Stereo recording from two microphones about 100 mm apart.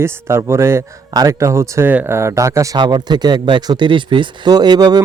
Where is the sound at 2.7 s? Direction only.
45° right (ahead or behind).